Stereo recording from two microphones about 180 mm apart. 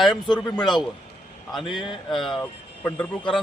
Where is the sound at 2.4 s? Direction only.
10° left (ahead or behind).